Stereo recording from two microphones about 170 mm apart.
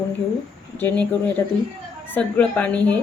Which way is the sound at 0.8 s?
10° left (ahead or behind).